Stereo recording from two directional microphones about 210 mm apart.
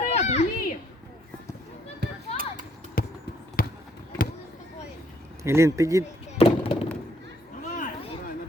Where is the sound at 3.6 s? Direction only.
45° left (ahead or behind).